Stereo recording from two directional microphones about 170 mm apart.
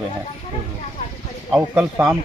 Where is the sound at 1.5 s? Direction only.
5° right (ahead or behind).